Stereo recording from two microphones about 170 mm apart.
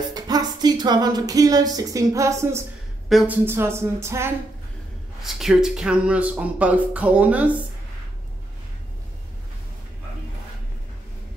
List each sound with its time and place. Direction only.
0.1 s music: 25° right (ahead or behind)
3.1 s speech: centre (ahead or behind)
3.4 s speech: 15° right (ahead or behind)
5.2 s speech: centre (ahead or behind)